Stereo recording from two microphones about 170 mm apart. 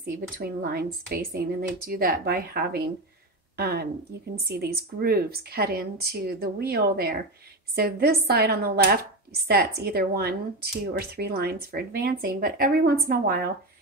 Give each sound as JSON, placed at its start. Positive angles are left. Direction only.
{"t": 0.0, "sound": "speech", "side_deg": -60}